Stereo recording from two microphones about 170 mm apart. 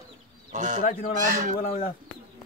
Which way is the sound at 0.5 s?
45° right (ahead or behind).